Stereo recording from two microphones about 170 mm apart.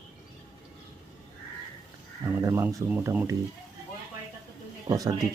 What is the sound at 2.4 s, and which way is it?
Speech, 15° right (ahead or behind).